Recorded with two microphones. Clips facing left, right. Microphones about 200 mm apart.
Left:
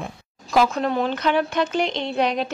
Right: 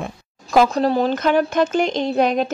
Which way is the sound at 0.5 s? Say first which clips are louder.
Right 4 dB; 40° right (ahead or behind).